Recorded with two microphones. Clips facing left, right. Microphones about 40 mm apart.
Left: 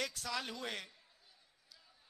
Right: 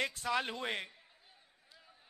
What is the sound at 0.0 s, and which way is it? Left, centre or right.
Speech, right.